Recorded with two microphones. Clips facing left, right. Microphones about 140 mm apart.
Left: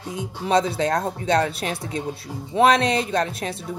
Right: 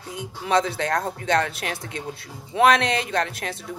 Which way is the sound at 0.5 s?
25° left (ahead or behind).